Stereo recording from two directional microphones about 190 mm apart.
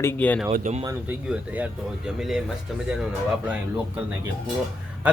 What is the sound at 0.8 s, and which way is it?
Speech, 10° right (ahead or behind).